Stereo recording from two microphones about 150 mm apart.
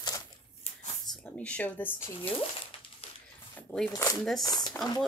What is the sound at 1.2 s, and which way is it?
Speech, 10° left (ahead or behind).